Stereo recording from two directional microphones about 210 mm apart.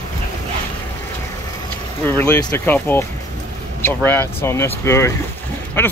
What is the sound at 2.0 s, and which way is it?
Speech, 10° left (ahead or behind).